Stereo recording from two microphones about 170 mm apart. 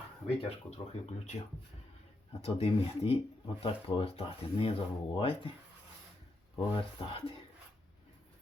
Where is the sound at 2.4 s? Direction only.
35° left (ahead or behind).